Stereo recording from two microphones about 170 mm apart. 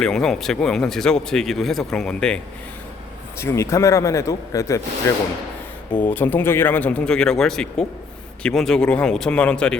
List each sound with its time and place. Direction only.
0.0 s speech: 5° left (ahead or behind)
3.3 s speech: 15° left (ahead or behind)
6.0 s speech: 10° left (ahead or behind)